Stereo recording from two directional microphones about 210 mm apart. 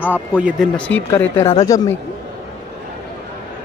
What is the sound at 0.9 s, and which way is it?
Speech, 10° left (ahead or behind).